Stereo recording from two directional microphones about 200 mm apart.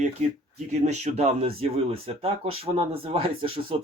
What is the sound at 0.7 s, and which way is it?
Speech, 35° right (ahead or behind).